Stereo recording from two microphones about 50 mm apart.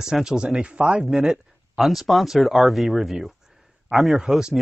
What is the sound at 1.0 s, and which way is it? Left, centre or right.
Speech, centre.